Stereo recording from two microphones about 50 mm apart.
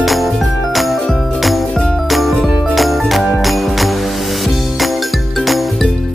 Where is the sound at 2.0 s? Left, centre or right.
Centre.